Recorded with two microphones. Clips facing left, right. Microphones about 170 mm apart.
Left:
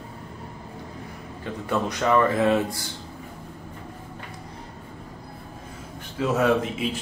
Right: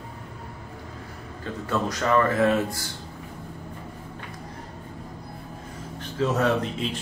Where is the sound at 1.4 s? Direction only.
15° left (ahead or behind).